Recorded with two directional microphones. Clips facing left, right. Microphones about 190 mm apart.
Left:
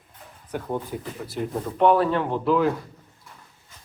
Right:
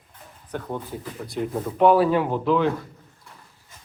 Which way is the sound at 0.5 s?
10° left (ahead or behind).